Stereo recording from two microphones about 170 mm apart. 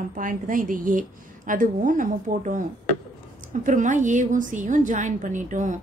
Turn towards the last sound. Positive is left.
turn(degrees=-45)  # may be behind; listen again after turning